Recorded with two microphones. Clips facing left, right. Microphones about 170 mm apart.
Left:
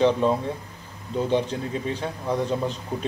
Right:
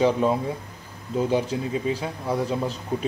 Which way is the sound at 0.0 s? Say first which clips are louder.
Even; 5° right (ahead or behind).